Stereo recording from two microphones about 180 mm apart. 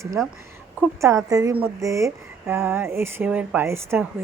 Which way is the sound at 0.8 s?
15° right (ahead or behind).